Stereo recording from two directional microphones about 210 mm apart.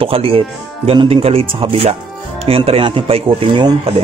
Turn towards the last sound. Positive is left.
turn(degrees=-25)  # may be behind; listen again after turning